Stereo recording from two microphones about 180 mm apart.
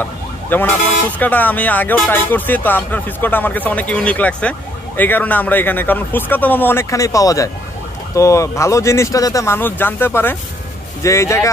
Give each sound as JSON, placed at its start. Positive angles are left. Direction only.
{"t": 0.5, "sound": "speech", "side_deg": 10}